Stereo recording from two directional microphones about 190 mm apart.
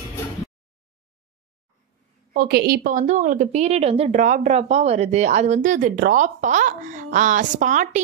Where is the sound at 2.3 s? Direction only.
55° right (ahead or behind).